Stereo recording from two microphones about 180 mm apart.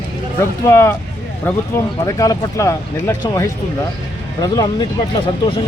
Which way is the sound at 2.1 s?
15° left (ahead or behind).